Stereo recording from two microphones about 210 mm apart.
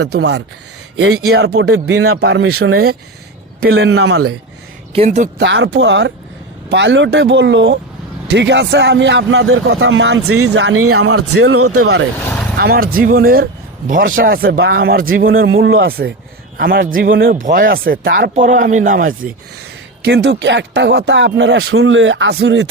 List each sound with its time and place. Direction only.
0.0 s speech: 55° right (ahead or behind)
0.9 s speech: 90° right
1.3 s speech: 50° right (ahead or behind); by 2.8 s 90° right
3.6 s a man's voice: 65° right (ahead or behind); by 4.4 s 90° right
4.9 s speech: 35° right (ahead or behind)
5.4 s a man's voice: 60° right (ahead or behind); by 11.9 s 90° right
12.5 s speech: 45° right (ahead or behind)
15.4 s a man's voice: 70° right (ahead or behind)
15.9 s speech: 45° right (ahead or behind)
20.1 s speech: 50° right (ahead or behind)